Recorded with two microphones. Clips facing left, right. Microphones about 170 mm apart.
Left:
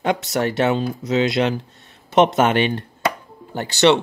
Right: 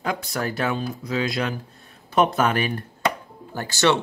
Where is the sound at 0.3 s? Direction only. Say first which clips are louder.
Left 7 dB; 75° left (ahead or behind).